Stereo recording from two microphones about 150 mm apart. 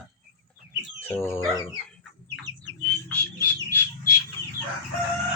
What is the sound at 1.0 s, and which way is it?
Chicken, 15° left (ahead or behind).